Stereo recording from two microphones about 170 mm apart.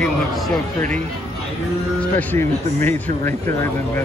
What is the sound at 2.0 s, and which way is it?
Speech, 10° left (ahead or behind).